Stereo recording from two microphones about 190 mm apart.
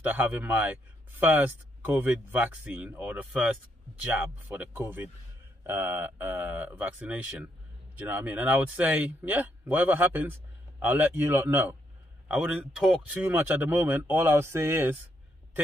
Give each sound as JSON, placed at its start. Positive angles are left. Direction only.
{"t": 0.0, "sound": "speech", "side_deg": -10}
{"t": 12.3, "sound": "speech", "side_deg": 0}